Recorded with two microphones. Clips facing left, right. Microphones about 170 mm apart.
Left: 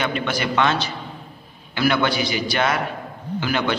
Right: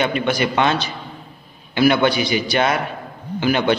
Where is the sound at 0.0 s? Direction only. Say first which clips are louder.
Right 4 dB; 15° right (ahead or behind).